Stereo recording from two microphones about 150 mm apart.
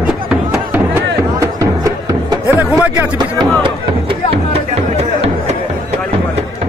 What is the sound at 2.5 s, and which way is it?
Music, 10° right (ahead or behind).